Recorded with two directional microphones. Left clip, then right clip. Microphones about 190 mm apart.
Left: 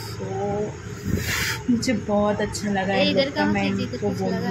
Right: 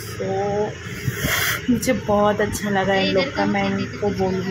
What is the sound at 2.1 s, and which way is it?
Speech, 5° right (ahead or behind).